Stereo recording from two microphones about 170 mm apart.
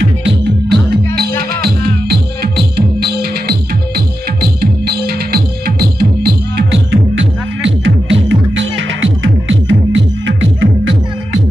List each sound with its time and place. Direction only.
0.2 s music: 70° right (ahead or behind)
4.4 s music: 65° right (ahead or behind); by 11.0 s 90° right